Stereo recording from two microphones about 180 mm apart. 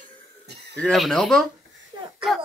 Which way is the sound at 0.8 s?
Centre (ahead or behind).